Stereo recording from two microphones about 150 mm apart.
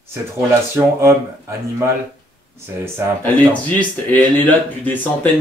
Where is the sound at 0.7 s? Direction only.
15° right (ahead or behind).